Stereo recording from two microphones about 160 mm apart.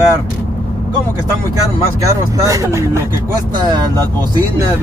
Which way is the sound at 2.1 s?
20° right (ahead or behind).